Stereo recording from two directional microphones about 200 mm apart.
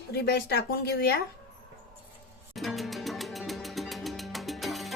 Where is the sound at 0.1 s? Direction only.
55° left (ahead or behind).